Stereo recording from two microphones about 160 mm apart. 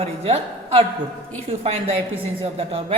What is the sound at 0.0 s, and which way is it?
A woman's voice, 40° right (ahead or behind).